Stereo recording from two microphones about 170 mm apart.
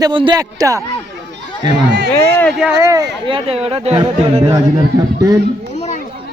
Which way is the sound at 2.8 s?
20° right (ahead or behind).